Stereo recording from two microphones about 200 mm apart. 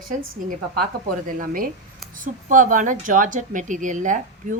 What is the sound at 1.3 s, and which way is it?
Speech, 45° right (ahead or behind).